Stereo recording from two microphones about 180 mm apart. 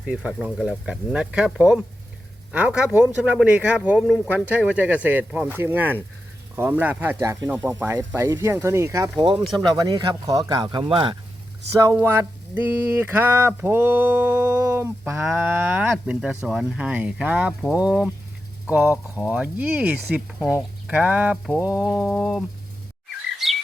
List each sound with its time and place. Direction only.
0.0 s speech: 5° right (ahead or behind)
2.5 s a sound: 5° right (ahead or behind); by 9.4 s 20° right (ahead or behind)
9.6 s speech: 20° right (ahead or behind)
11.8 s a sound: 15° right (ahead or behind)
21.6 s speech: 5° right (ahead or behind)
23.4 s chirp: centre (ahead or behind)